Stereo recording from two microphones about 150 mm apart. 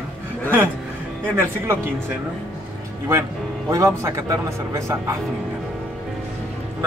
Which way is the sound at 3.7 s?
20° right (ahead or behind).